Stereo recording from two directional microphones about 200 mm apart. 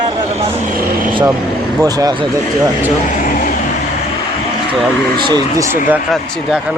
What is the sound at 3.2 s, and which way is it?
Vehicle, 40° left (ahead or behind).